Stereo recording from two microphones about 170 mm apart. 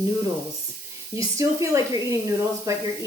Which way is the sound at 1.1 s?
20° right (ahead or behind).